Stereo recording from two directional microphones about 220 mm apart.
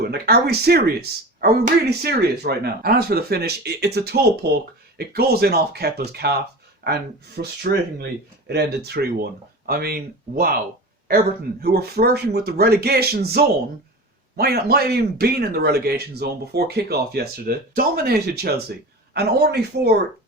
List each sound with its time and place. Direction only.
0.0 s a man's voice: 45° right (ahead or behind)